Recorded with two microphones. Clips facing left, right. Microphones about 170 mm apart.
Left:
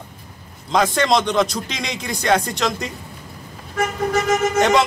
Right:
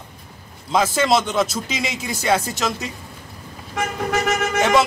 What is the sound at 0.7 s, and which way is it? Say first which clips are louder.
Speech: left 1 dB; 5° right (ahead or behind).